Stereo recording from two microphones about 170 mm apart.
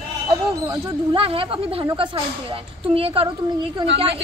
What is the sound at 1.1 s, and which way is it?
A woman's voice, 30° right (ahead or behind).